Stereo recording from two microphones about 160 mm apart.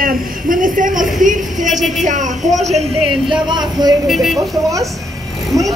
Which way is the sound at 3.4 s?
30° right (ahead or behind).